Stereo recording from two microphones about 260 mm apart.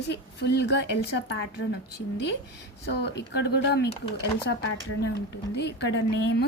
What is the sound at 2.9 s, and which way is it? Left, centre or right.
A woman's voice, left.